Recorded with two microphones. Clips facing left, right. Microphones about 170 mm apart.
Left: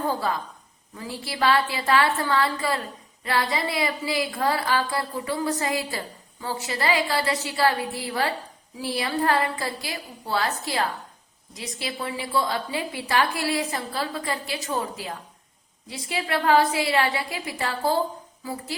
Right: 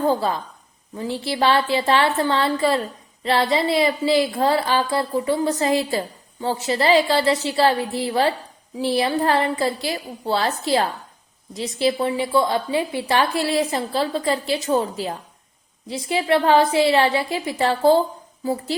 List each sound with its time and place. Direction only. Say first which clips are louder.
0.1 s a woman's voice: right 5 dB; 25° right (ahead or behind)